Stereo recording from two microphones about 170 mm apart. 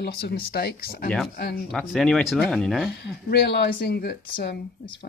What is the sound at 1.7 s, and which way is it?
Speech, 5° left (ahead or behind).